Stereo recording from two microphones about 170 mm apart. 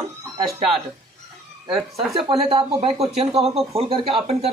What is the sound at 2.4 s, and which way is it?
Speech, 35° right (ahead or behind).